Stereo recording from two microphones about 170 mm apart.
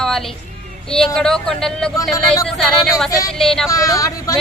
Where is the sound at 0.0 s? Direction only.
Centre (ahead or behind).